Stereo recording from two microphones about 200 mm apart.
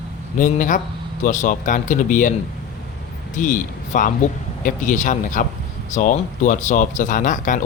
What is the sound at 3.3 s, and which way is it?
Speech, 40° left (ahead or behind).